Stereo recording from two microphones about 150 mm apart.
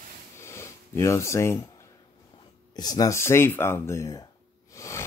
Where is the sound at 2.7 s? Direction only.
25° left (ahead or behind).